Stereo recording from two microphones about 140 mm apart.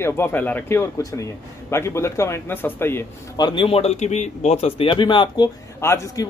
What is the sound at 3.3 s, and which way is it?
A man's voice, 35° left (ahead or behind).